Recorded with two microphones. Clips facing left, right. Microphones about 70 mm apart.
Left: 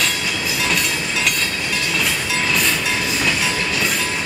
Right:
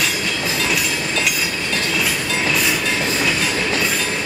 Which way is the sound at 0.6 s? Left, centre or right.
Centre.